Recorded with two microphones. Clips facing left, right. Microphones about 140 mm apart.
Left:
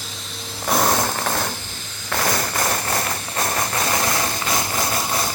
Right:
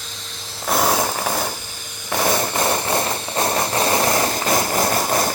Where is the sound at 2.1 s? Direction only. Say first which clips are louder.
Right 3 dB; 15° right (ahead or behind); by 4.8 s 35° right (ahead or behind).